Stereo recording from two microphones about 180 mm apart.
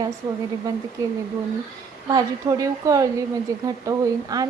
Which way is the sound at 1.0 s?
15° right (ahead or behind).